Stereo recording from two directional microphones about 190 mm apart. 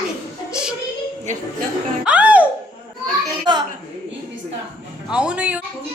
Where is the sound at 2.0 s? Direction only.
5° right (ahead or behind).